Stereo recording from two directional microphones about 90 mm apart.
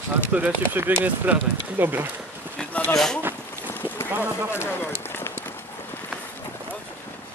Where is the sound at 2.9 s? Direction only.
5° left (ahead or behind).